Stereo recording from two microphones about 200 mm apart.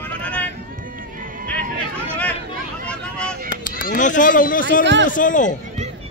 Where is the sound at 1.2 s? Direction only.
45° right (ahead or behind).